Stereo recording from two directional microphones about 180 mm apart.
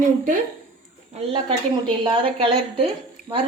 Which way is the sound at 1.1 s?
30° right (ahead or behind).